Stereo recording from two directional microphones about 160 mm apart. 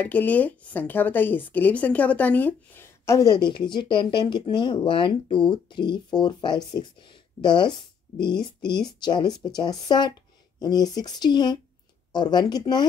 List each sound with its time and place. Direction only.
0.0 s a woman's voice: 10° left (ahead or behind); by 12.8 s 25° left (ahead or behind)